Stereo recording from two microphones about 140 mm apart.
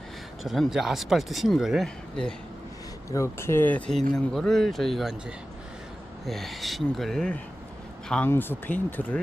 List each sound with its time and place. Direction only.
0.4 s speech: centre (ahead or behind)
3.1 s speech: 20° left (ahead or behind); by 4.9 s centre (ahead or behind)
6.2 s speech: centre (ahead or behind)
8.1 s speech: 15° left (ahead or behind)